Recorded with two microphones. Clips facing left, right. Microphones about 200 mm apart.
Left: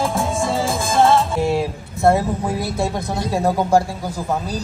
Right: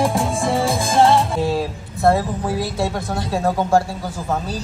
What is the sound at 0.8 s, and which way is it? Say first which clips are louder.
Music: even; 15° right (ahead or behind).